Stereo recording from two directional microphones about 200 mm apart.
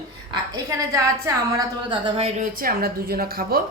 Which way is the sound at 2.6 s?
50° right (ahead or behind).